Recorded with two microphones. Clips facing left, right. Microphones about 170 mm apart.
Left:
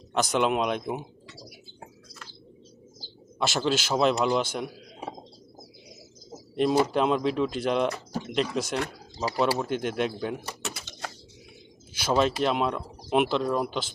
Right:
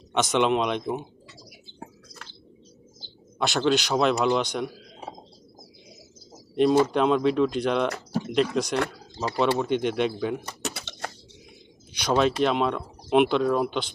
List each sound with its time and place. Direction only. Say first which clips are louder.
0.1 s speech: right 2 dB; centre (ahead or behind)
3.3 s speech: right 3 dB; centre (ahead or behind)
6.5 s speech: right 3 dB; centre (ahead or behind)
10.8 s a sound: right 3 dB; 65° right (ahead or behind)
11.9 s speech: right 2 dB; centre (ahead or behind)